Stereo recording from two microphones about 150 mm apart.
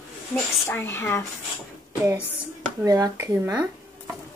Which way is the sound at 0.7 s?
15° left (ahead or behind).